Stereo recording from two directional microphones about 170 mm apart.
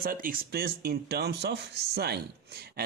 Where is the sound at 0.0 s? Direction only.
55° right (ahead or behind).